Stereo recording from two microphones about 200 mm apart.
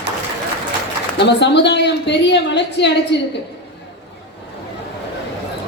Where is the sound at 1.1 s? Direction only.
60° left (ahead or behind).